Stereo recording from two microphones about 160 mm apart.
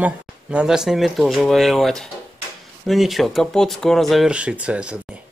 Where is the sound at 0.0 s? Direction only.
5° right (ahead or behind).